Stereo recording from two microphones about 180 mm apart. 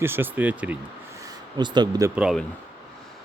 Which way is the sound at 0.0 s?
10° right (ahead or behind).